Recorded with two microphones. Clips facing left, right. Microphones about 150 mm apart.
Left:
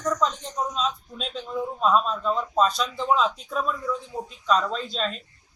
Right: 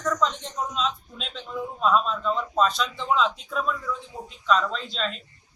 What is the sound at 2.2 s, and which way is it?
Speech, 5° left (ahead or behind).